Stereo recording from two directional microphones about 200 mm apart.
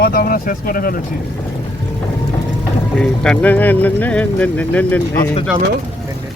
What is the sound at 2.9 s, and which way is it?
Speech, 5° left (ahead or behind).